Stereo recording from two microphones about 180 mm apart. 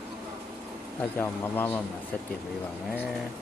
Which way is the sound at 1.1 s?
10° left (ahead or behind).